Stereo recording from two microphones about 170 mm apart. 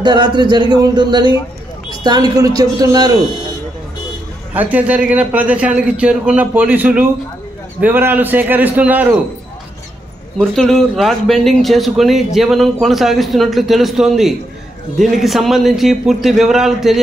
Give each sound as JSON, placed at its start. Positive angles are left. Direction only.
{"t": 0.0, "sound": "speech", "side_deg": -25}
{"t": 4.6, "sound": "a man's voice", "side_deg": -10}
{"t": 10.4, "sound": "speech", "side_deg": 5}